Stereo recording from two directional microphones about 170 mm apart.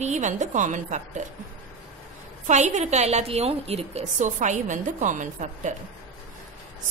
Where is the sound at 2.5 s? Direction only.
45° right (ahead or behind).